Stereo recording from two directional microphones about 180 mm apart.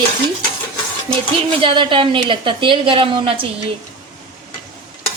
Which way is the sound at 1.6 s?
30° right (ahead or behind).